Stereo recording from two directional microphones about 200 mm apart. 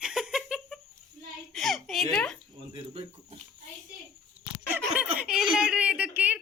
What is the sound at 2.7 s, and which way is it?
Speech, 25° right (ahead or behind).